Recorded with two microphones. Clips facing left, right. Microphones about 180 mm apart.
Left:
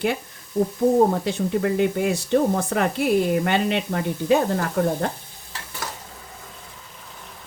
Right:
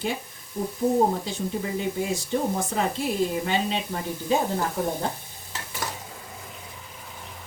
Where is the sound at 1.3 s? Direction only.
65° left (ahead or behind).